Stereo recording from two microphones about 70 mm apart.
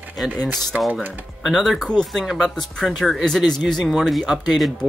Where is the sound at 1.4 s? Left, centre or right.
Centre.